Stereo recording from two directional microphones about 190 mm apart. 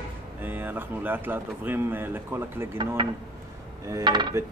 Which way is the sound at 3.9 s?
20° right (ahead or behind).